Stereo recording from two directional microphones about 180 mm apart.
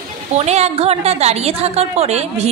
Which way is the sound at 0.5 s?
35° right (ahead or behind).